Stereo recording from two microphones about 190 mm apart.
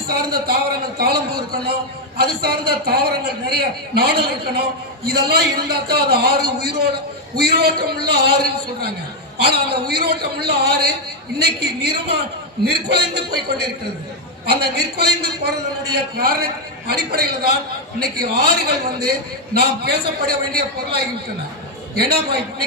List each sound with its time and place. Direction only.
0.1 s a man's voice: 50° right (ahead or behind)
18.7 s a man's voice: 55° right (ahead or behind)